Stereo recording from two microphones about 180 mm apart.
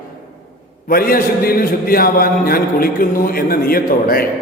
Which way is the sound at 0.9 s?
55° left (ahead or behind).